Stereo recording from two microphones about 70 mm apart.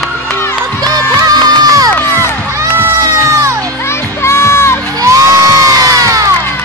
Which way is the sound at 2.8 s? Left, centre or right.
Right.